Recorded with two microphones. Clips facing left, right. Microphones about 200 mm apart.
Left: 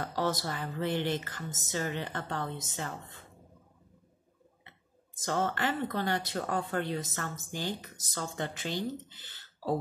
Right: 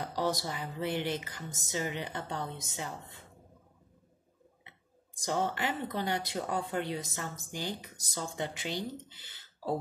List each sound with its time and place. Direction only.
0.0 s speech: 15° right (ahead or behind)
5.2 s speech: 15° right (ahead or behind)